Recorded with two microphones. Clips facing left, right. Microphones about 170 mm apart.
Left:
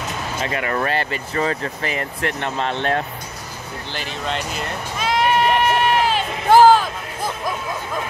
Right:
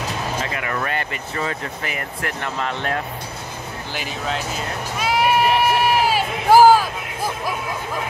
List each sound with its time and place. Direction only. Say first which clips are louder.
0.6 s speech: left 3 dB; 35° left (ahead or behind)
3.9 s sheep: even; 5° right (ahead or behind)